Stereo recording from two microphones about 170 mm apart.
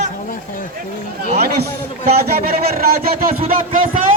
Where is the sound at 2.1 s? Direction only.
65° right (ahead or behind).